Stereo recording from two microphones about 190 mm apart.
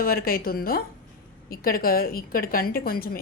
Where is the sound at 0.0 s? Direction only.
50° left (ahead or behind).